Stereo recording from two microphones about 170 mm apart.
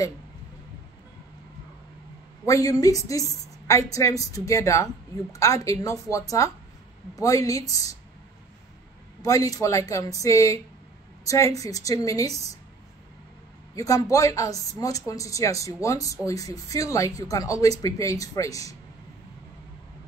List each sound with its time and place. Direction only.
2.4 s speech: 20° left (ahead or behind)
9.2 s speech: 20° left (ahead or behind)
13.7 s speech: 20° left (ahead or behind)